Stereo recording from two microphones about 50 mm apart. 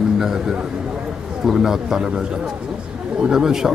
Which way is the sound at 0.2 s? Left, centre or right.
Centre.